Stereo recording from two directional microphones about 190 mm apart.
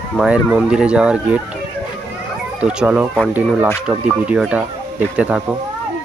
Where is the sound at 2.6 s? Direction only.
5° right (ahead or behind).